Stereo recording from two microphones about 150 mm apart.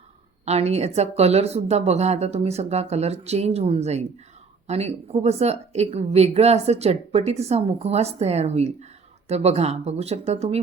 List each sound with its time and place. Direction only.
0.4 s speech: 45° right (ahead or behind)